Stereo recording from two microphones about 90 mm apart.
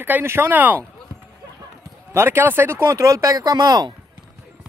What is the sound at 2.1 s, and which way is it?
Speech, 30° right (ahead or behind).